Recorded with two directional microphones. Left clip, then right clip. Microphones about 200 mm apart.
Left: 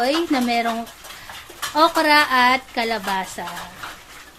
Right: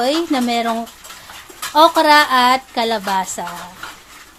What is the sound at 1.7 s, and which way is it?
A woman's voice, 25° right (ahead or behind).